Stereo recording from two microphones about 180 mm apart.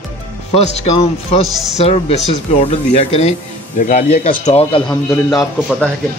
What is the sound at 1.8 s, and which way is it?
Speech, 35° left (ahead or behind).